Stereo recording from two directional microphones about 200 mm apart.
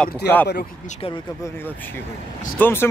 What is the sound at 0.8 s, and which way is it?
Speech, 25° left (ahead or behind).